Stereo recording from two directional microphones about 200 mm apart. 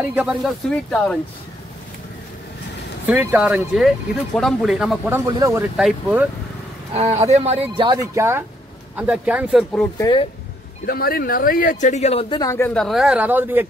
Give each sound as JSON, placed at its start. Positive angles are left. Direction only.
{"t": 0.1, "sound": "speech", "side_deg": -5}
{"t": 3.1, "sound": "speech", "side_deg": -10}
{"t": 5.2, "sound": "speech", "side_deg": -15}
{"t": 5.8, "sound": "speech", "side_deg": -5}
{"t": 6.9, "sound": "speech", "side_deg": -30}
{"t": 9.9, "sound": "speech", "side_deg": 20}
{"t": 10.9, "sound": "speech", "side_deg": 50}